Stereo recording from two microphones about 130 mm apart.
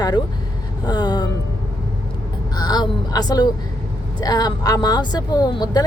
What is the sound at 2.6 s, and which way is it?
Speech, 30° left (ahead or behind).